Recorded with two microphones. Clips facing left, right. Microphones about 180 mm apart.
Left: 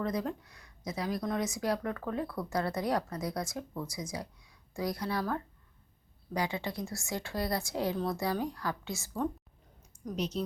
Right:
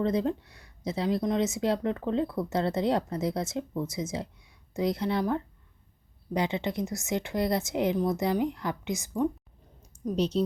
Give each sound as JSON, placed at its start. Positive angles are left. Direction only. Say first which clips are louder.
{"t": 0.0, "sound": "speech", "louder": "right 6 dB", "side_deg": -25}
{"t": 10.0, "sound": "speech", "louder": "right 7 dB", "side_deg": -25}